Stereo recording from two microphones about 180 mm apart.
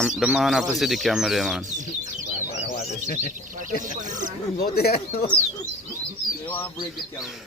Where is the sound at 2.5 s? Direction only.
40° left (ahead or behind).